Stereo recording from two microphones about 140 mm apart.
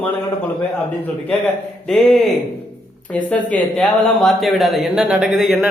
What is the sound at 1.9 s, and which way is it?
Speech, centre (ahead or behind).